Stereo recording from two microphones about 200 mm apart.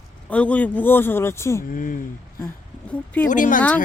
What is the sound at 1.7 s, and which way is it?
Speech, 45° left (ahead or behind).